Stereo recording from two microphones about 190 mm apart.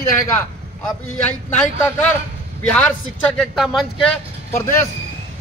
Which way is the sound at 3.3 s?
Centre (ahead or behind).